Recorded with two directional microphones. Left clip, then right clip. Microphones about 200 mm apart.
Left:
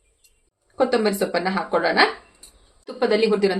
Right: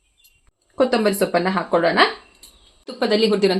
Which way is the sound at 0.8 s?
50° right (ahead or behind).